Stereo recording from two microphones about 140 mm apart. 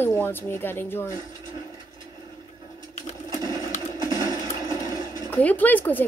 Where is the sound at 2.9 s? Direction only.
55° left (ahead or behind).